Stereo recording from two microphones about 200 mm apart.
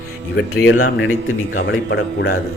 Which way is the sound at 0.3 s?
90° left.